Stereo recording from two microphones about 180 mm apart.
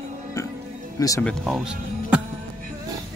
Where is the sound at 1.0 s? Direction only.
20° left (ahead or behind).